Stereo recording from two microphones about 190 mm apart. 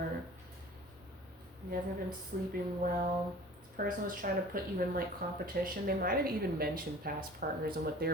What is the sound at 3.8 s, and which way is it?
Speech, 45° right (ahead or behind).